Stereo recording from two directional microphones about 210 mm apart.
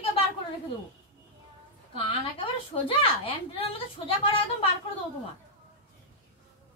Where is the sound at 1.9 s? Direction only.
25° left (ahead or behind).